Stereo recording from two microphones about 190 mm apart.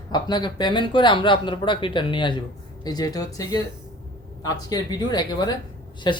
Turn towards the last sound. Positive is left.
turn(degrees=25)  # may be behind; listen again after turning